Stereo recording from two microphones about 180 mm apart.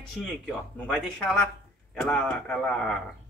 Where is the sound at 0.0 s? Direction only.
Centre (ahead or behind).